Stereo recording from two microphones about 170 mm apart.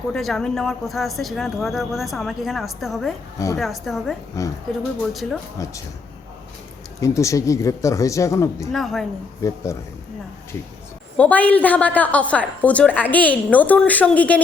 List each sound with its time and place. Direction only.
0.1 s speech: centre (ahead or behind)
3.3 s a woman's voice: 20° left (ahead or behind)
3.6 s speech: centre (ahead or behind)
4.4 s a woman's voice: 15° left (ahead or behind)
7.0 s a woman's voice: 20° left (ahead or behind)
8.7 s speech: centre (ahead or behind)
9.4 s speech: 20° left (ahead or behind)
11.2 s a woman's voice: 10° left (ahead or behind)